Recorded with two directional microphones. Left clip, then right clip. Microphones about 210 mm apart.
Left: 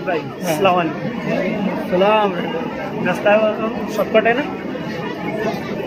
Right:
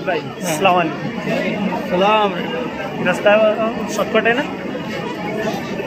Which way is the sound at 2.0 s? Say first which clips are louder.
Even; 20° left (ahead or behind).